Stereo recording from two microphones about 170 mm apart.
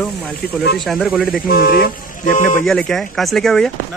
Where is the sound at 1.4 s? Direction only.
60° left (ahead or behind).